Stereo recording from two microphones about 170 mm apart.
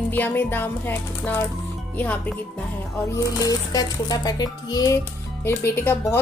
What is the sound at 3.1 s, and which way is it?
Music, 20° left (ahead or behind).